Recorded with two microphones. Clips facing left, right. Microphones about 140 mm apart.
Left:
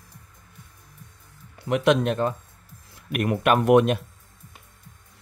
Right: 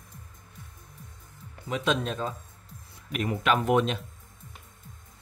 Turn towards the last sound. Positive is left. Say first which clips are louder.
# left 6 dB
turn(degrees=65)  # may be behind; listen again after turning